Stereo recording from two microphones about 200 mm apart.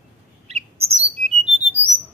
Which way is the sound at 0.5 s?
30° right (ahead or behind).